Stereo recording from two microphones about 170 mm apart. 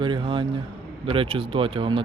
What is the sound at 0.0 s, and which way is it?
Speech, 30° right (ahead or behind).